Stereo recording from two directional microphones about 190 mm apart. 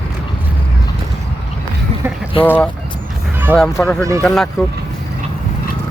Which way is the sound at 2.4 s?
10° left (ahead or behind).